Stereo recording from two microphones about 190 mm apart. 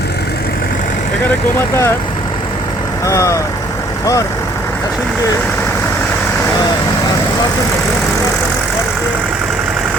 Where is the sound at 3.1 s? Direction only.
15° left (ahead or behind).